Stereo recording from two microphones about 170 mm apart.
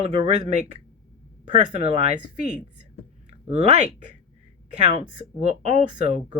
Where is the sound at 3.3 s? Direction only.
40° right (ahead or behind).